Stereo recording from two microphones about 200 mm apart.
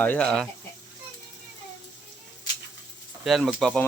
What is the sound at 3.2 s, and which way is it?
Speech, centre (ahead or behind).